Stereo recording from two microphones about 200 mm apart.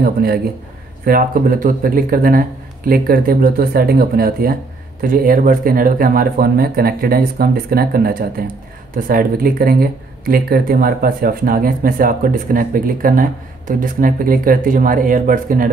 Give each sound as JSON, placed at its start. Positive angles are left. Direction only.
{"t": 0.0, "sound": "speech", "side_deg": -50}